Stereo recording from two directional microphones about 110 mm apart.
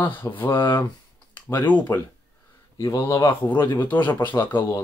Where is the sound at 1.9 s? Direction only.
30° left (ahead or behind).